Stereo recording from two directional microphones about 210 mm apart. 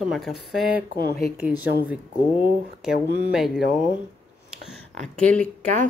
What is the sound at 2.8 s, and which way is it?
Speech, 5° right (ahead or behind).